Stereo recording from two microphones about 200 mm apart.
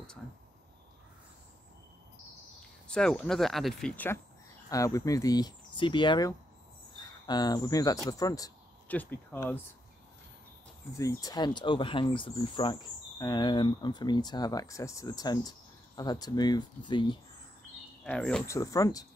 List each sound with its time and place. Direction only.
2.9 s speech: 5° left (ahead or behind)
11.0 s speech: 15° left (ahead or behind)
18.0 s speech: 5° left (ahead or behind)
18.5 s speech: 15° left (ahead or behind)